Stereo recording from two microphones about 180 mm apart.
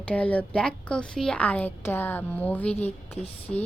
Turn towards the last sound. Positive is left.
turn(degrees=35)  # may be behind; listen again after turning